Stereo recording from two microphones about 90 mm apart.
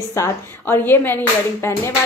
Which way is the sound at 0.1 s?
30° left (ahead or behind).